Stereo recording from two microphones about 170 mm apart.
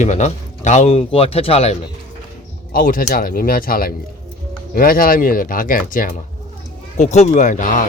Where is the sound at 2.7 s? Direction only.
55° left (ahead or behind).